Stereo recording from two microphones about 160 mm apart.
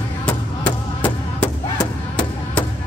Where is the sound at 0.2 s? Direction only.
10° left (ahead or behind).